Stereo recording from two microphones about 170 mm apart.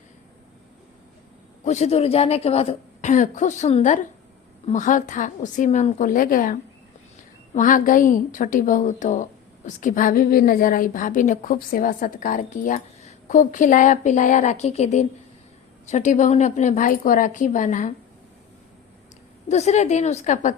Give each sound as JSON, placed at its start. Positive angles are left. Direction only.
{"t": 1.6, "sound": "a woman's voice", "side_deg": 40}
{"t": 19.5, "sound": "a woman's voice", "side_deg": 40}